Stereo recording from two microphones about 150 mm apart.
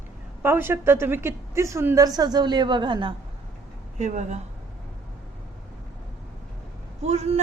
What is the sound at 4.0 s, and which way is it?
Speech, 50° right (ahead or behind).